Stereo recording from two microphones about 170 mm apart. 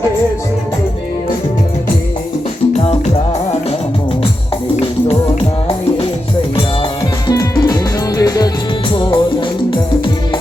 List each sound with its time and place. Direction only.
2.7 s music: 40° left (ahead or behind)
4.8 s music: 35° left (ahead or behind)
7.3 s music: 20° left (ahead or behind)